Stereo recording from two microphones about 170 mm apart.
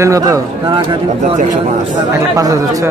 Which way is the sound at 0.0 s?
20° right (ahead or behind).